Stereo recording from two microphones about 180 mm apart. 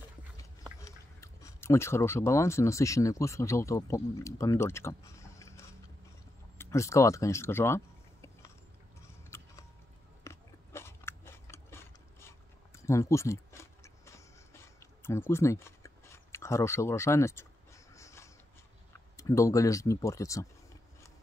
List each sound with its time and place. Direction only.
0.7 s speech: 15° left (ahead or behind)
9.0 s biting: 15° left (ahead or behind)
17.9 s a sound: 15° left (ahead or behind)
18.9 s speech: 15° left (ahead or behind)